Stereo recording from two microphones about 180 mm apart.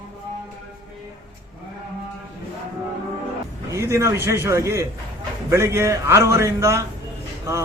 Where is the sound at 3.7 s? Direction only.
15° right (ahead or behind).